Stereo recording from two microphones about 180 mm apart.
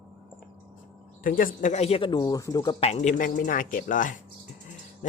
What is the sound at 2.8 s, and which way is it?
Speech, 35° left (ahead or behind).